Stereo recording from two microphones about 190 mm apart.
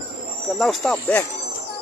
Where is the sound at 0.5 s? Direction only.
Centre (ahead or behind).